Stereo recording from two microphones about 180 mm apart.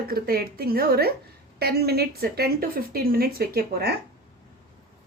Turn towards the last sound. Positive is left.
turn(degrees=-55)  # may be behind; listen again after turning